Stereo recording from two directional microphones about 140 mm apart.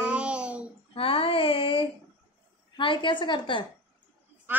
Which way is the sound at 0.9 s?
40° left (ahead or behind).